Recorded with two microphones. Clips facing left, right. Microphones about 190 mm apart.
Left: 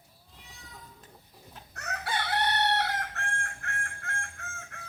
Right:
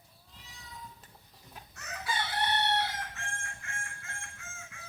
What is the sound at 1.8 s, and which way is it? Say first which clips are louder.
Chicken: left 3 dB; 65° left (ahead or behind).